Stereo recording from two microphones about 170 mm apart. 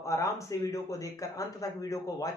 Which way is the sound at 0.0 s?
20° left (ahead or behind).